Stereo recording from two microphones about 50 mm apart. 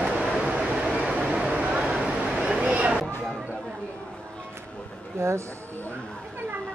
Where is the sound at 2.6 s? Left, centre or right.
Right.